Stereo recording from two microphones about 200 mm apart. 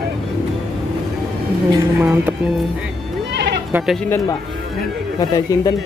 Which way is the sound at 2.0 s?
5° right (ahead or behind).